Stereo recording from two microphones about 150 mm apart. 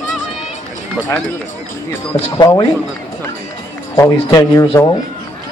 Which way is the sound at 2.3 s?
30° left (ahead or behind).